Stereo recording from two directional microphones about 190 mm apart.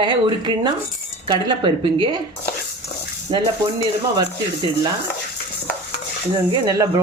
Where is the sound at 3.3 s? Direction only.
20° right (ahead or behind).